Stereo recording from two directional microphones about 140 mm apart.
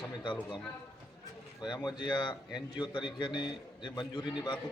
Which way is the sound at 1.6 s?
30° left (ahead or behind).